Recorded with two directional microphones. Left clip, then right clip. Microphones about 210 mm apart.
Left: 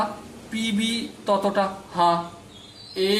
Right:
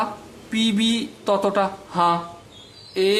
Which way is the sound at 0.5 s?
40° right (ahead or behind).